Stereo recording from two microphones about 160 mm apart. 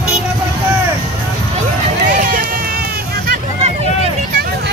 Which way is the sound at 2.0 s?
60° right (ahead or behind).